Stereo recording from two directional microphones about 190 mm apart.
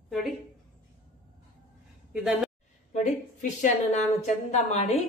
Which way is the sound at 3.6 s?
40° left (ahead or behind).